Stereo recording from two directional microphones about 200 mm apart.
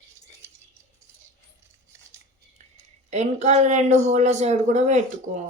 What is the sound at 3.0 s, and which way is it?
Speech, 35° right (ahead or behind).